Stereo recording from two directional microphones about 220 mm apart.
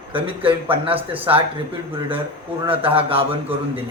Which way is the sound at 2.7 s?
25° right (ahead or behind).